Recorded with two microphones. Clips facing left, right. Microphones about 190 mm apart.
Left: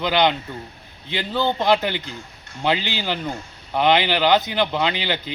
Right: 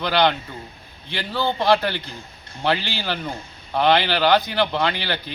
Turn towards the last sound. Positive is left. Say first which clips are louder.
# left 1 dB
turn(degrees=20)  # may be behind; listen again after turning